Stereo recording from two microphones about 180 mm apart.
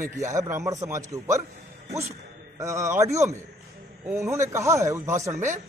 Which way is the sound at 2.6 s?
15° right (ahead or behind).